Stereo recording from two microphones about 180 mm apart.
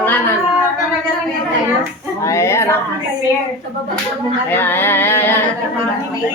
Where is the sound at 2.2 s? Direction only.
15° left (ahead or behind).